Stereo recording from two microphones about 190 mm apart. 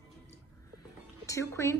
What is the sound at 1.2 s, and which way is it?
Speech, 15° left (ahead or behind).